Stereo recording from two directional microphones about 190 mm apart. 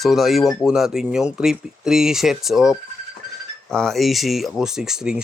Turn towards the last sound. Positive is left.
turn(degrees=-5)  # may be behind; listen again after turning